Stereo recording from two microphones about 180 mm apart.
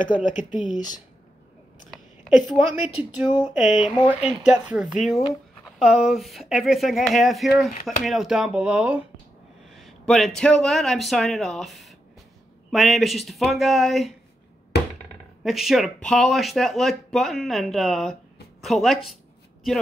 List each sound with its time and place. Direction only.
0.0 s speech: 45° left (ahead or behind)
1.9 s a sound: centre (ahead or behind)
3.0 s a man's voice: 5° right (ahead or behind)
15.4 s speech: centre (ahead or behind)